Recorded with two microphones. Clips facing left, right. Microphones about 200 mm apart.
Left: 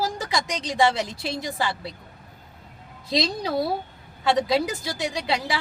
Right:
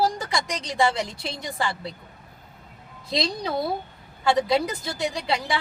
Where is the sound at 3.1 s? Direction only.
Centre (ahead or behind).